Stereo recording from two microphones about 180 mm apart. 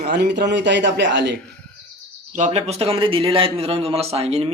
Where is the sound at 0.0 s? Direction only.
65° right (ahead or behind).